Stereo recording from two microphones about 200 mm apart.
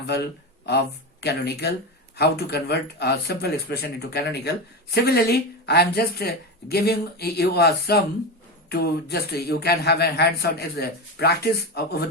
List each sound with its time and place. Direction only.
0.1 s a man's voice: 55° left (ahead or behind)